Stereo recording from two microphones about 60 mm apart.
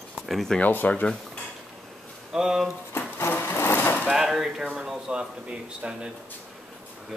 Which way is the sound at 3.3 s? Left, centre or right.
Left.